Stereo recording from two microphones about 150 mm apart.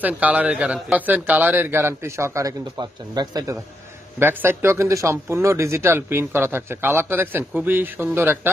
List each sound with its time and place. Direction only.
0.0 s speech: 10° right (ahead or behind); by 3.5 s 25° right (ahead or behind)
4.2 s speech: 15° right (ahead or behind)